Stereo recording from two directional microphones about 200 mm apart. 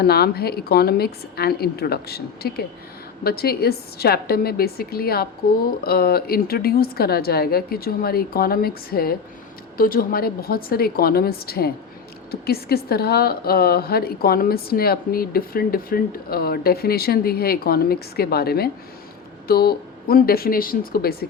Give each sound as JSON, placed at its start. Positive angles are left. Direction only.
{"t": 0.0, "sound": "a woman's voice", "side_deg": 50}